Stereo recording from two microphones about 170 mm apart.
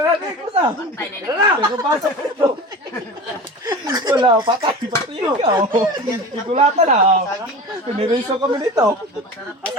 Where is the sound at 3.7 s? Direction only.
20° right (ahead or behind).